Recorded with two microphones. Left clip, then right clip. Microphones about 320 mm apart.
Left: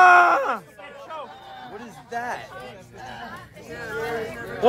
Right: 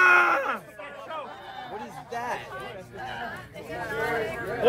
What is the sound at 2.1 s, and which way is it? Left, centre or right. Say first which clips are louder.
Speech: left 3 dB; left.